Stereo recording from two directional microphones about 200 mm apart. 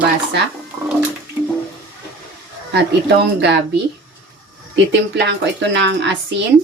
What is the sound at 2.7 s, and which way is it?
Speech, 60° right (ahead or behind).